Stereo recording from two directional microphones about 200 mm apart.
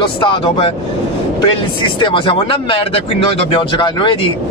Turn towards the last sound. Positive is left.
turn(degrees=25)  # may be behind; listen again after turning